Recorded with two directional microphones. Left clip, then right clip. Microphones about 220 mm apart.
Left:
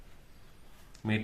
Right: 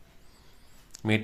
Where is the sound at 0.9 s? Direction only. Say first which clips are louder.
Right 6 dB; 35° right (ahead or behind).